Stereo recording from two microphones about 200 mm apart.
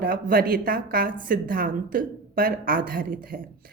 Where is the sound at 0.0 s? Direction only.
45° right (ahead or behind).